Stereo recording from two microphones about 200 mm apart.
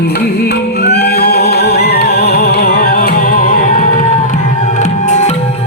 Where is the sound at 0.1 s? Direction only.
55° left (ahead or behind); by 5.3 s 35° left (ahead or behind).